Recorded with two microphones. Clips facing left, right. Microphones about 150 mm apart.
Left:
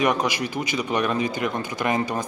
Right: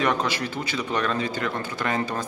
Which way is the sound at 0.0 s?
15° left (ahead or behind).